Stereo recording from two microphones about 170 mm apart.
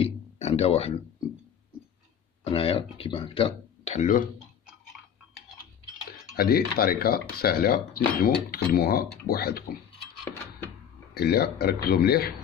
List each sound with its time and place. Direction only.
0.0 s a sound: 35° left (ahead or behind)
2.4 s speech: 35° left (ahead or behind)
6.3 s speech: 60° left (ahead or behind)
11.1 s speech: 70° left (ahead or behind)